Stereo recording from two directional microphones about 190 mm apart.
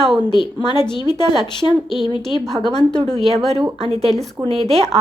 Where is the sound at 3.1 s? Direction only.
30° right (ahead or behind).